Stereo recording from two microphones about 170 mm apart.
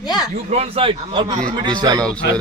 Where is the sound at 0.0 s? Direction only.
25° left (ahead or behind).